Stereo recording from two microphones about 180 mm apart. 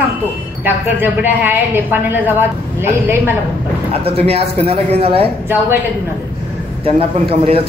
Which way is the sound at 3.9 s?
35° right (ahead or behind).